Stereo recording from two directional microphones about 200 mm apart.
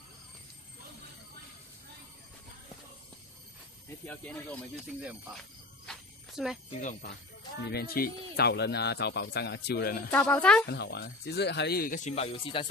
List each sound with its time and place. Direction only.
4.0 s speech: 5° left (ahead or behind)
5.0 s a sound: centre (ahead or behind)
6.8 s speech: 40° left (ahead or behind)
7.6 s speech: 50° left (ahead or behind)
10.1 s speech: 10° left (ahead or behind)
10.7 s speech: 55° left (ahead or behind); by 12.6 s 30° left (ahead or behind)